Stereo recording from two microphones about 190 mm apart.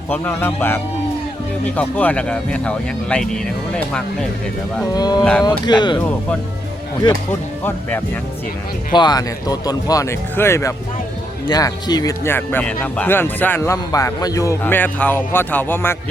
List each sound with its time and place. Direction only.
0.1 s speech: 10° left (ahead or behind)
4.9 s speech: 20° left (ahead or behind)
5.2 s speech: 5° left (ahead or behind)
5.5 s speech: 25° left (ahead or behind)
7.3 s speech: 10° left (ahead or behind)
8.9 s speech: 20° left (ahead or behind)